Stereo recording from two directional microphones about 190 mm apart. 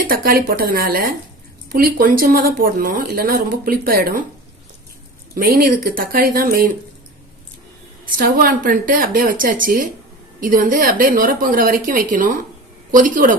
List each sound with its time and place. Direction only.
0.1 s speech: 50° right (ahead or behind)
5.3 s speech: 50° right (ahead or behind)
8.2 s speech: 50° right (ahead or behind)